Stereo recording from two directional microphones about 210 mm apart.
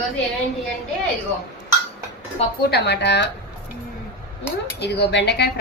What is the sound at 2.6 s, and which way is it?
Speech, 50° left (ahead or behind).